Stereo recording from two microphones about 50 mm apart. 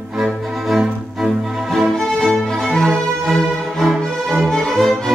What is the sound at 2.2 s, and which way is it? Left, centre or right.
Music, centre.